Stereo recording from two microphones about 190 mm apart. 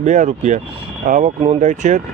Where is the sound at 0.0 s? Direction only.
40° right (ahead or behind).